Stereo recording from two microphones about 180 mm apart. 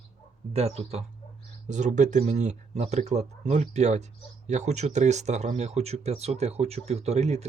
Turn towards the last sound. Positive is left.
turn(degrees=-40)  # may be behind; listen again after turning